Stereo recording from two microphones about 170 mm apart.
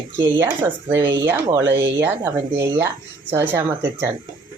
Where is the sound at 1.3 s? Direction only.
15° right (ahead or behind).